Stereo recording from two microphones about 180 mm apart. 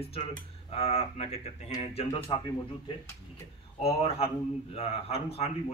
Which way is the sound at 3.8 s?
30° left (ahead or behind).